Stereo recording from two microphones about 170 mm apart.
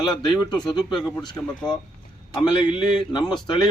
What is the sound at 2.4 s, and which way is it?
A man's voice, 25° left (ahead or behind).